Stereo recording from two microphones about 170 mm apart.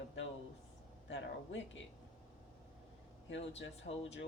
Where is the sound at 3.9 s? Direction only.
50° left (ahead or behind).